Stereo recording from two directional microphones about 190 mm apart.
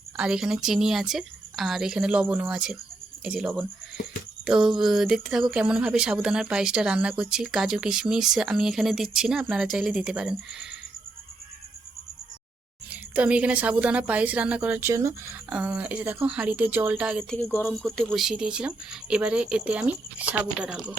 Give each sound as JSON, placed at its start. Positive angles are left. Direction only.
{"t": 0.2, "sound": "speech", "side_deg": -5}
{"t": 12.9, "sound": "a woman's voice", "side_deg": -5}